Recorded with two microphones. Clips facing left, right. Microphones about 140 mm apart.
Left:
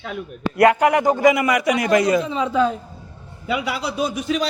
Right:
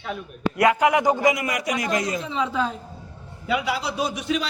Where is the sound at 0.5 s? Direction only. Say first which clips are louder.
Left 4 dB; 50° left (ahead or behind).